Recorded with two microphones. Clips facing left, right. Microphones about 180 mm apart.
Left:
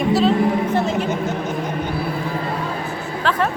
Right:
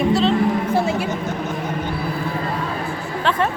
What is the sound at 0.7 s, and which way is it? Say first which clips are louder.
Speech: even; 10° right (ahead or behind).